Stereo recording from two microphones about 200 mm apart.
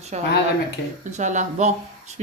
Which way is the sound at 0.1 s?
35° right (ahead or behind).